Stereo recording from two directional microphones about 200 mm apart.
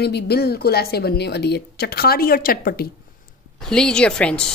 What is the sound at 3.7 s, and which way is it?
Speech, 5° left (ahead or behind).